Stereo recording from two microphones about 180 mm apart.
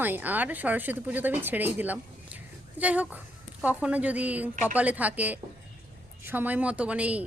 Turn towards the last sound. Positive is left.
turn(degrees=-5)  # may be behind; listen again after turning